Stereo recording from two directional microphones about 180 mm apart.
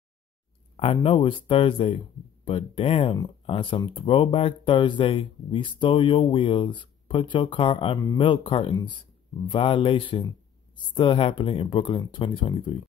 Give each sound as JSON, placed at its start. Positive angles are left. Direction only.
{"t": 0.7, "sound": "speech", "side_deg": 35}